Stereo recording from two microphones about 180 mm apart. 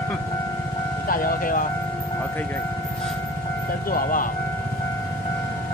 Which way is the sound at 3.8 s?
50° left (ahead or behind).